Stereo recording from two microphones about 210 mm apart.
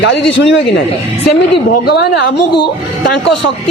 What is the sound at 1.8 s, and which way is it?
Speech, 50° left (ahead or behind).